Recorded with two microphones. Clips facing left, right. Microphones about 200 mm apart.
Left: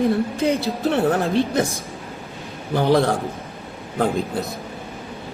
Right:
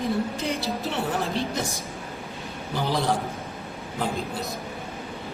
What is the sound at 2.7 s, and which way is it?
Speech, 55° left (ahead or behind).